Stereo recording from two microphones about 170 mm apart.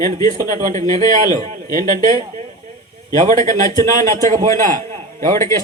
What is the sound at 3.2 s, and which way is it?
A man's voice, 50° right (ahead or behind).